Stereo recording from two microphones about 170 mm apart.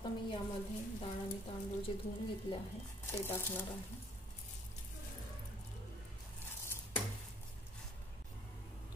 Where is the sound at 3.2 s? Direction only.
15° left (ahead or behind).